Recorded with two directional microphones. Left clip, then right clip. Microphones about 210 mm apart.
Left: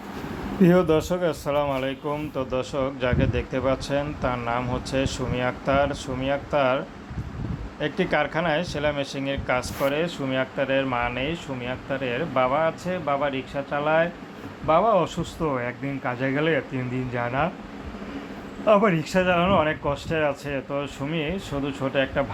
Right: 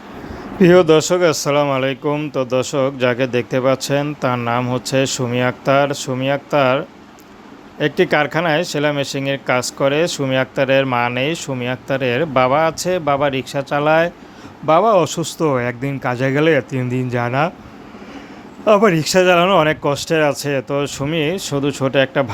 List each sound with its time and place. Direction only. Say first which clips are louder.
0.6 s speech: right 9 dB; 30° right (ahead or behind); by 17.5 s 55° right (ahead or behind)
18.6 s speech: right 7 dB; 50° right (ahead or behind)